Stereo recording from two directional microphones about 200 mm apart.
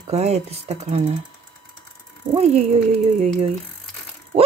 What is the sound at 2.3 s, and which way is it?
Speech, 30° right (ahead or behind).